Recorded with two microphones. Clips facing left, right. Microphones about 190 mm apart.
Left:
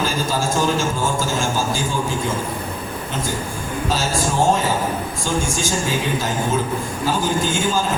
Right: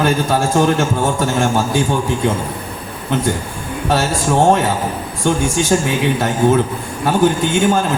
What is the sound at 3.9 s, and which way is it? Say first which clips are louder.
A man's voice: right 6 dB; 65° right (ahead or behind).